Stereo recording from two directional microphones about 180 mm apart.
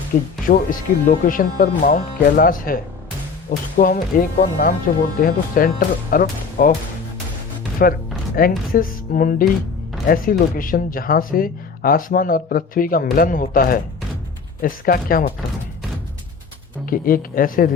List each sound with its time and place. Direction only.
0.4 s speech: 50° left (ahead or behind)
7.8 s speech: 55° left (ahead or behind)
16.8 s speech: 50° left (ahead or behind)